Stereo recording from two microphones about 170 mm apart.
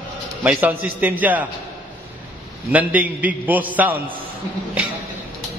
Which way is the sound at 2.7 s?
10° right (ahead or behind).